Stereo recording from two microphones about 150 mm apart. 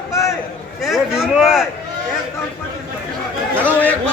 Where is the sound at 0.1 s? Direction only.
20° left (ahead or behind).